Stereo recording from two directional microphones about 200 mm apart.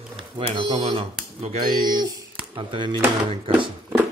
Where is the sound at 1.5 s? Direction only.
45° right (ahead or behind).